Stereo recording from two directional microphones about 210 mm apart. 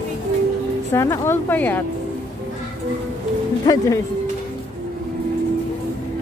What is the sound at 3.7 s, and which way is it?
Speech, 20° left (ahead or behind).